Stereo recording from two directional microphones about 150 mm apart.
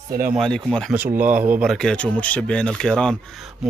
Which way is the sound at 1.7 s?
5° left (ahead or behind).